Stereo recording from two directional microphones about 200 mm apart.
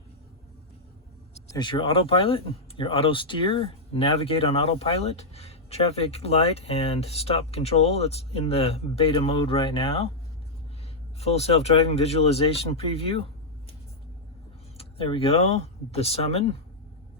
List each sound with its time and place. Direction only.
1.5 s speech: 25° left (ahead or behind)
11.2 s speech: 30° left (ahead or behind)
14.8 s speech: 25° left (ahead or behind)